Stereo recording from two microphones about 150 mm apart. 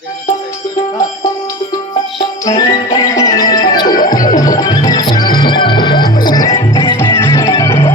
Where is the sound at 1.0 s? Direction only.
20° left (ahead or behind).